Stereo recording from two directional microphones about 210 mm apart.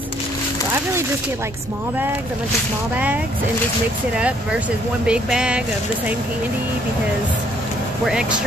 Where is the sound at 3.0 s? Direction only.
5° right (ahead or behind).